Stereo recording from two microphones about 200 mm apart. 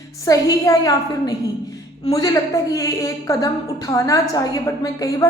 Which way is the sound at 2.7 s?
15° left (ahead or behind).